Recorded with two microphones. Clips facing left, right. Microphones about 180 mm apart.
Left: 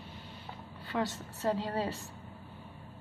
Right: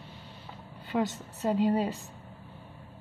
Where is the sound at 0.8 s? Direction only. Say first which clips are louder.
Right 4 dB; 20° right (ahead or behind).